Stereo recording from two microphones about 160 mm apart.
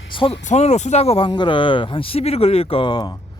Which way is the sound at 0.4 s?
45° left (ahead or behind).